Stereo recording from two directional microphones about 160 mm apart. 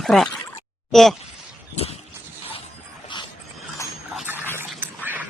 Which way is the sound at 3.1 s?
30° left (ahead or behind).